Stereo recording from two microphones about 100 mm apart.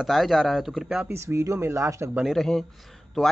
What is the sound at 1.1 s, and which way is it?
Speech, 30° right (ahead or behind).